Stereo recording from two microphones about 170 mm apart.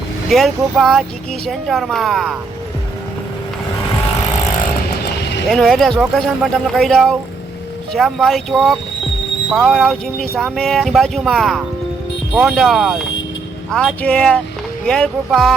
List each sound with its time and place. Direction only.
0.3 s speech: centre (ahead or behind)
5.2 s vehicle: 90° left
5.5 s speech: centre (ahead or behind)